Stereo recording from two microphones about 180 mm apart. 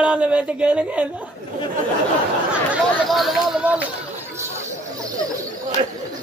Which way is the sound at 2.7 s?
5° right (ahead or behind).